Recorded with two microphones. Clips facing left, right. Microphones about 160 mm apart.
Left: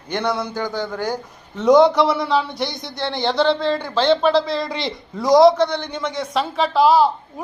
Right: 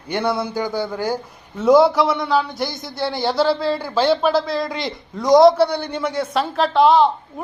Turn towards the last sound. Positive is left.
turn(degrees=5)  # may be behind; listen again after turning